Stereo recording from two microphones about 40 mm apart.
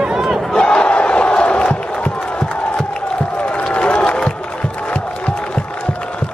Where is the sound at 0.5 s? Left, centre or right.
Left.